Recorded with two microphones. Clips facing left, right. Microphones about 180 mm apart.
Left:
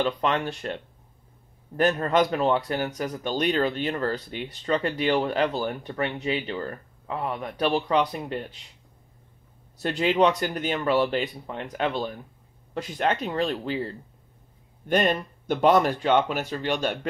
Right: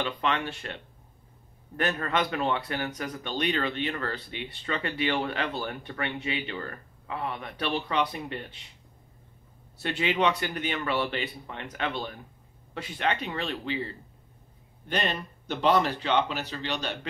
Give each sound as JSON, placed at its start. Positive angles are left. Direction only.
{"t": 0.0, "sound": "speech", "side_deg": 40}
{"t": 2.0, "sound": "speech", "side_deg": 40}
{"t": 9.8, "sound": "speech", "side_deg": 40}